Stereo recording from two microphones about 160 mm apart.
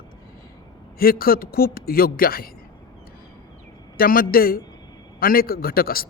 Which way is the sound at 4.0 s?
65° left (ahead or behind).